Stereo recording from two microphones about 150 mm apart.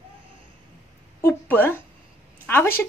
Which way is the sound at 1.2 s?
15° left (ahead or behind).